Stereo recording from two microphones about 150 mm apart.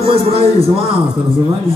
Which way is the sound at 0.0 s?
40° right (ahead or behind).